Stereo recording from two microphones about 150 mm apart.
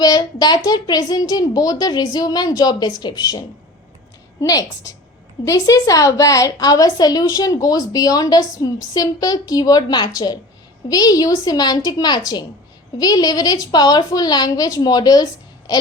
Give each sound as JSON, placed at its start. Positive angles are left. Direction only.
{"t": 0.0, "sound": "a woman's voice", "side_deg": 25}